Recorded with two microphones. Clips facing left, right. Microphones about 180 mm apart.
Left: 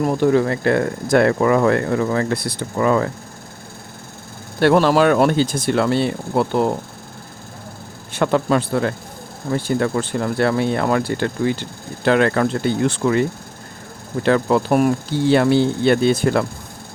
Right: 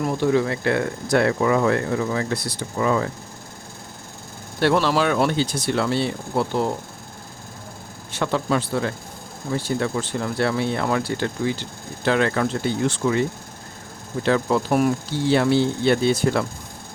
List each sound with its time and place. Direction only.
0.0 s speech: 50° left (ahead or behind)
4.6 s speech: 50° left (ahead or behind)
8.1 s speech: 55° left (ahead or behind)
14.3 s speech: 55° left (ahead or behind)